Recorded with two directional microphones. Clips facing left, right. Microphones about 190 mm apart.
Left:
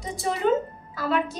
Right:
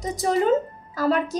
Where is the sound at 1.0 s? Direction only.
40° right (ahead or behind).